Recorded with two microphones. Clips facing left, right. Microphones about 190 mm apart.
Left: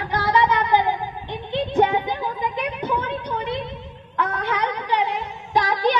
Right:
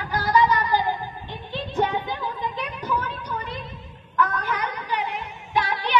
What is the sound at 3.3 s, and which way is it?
Music, 75° left (ahead or behind).